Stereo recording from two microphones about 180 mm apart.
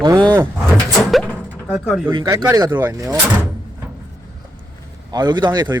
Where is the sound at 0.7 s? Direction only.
Centre (ahead or behind).